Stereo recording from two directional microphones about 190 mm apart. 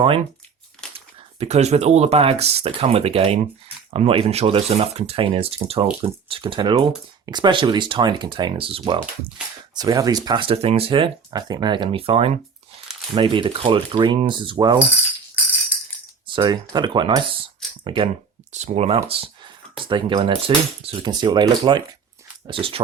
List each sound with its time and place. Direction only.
0.9 s speech: 35° right (ahead or behind)
16.2 s speech: 25° right (ahead or behind)